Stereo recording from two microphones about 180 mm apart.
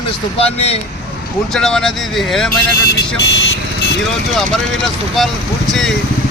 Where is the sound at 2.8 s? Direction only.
80° left.